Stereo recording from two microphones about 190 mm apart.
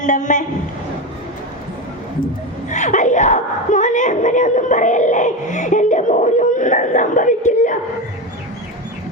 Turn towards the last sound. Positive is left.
turn(degrees=40)  # may be behind; listen again after turning